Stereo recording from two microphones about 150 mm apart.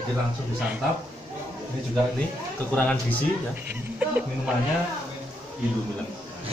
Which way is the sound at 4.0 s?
10° right (ahead or behind).